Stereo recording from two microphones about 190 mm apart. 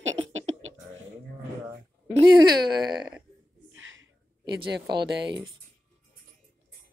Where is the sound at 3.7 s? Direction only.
85° right; by 5.3 s 60° right (ahead or behind).